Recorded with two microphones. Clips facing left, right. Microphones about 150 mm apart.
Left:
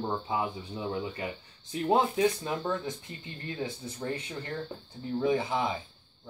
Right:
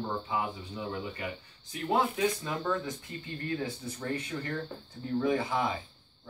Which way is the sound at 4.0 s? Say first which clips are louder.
Even; 25° left (ahead or behind).